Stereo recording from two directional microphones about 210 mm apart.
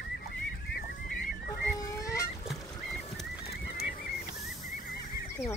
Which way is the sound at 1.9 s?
15° left (ahead or behind).